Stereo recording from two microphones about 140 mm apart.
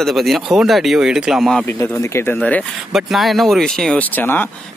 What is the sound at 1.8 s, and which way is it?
Speech, 20° left (ahead or behind).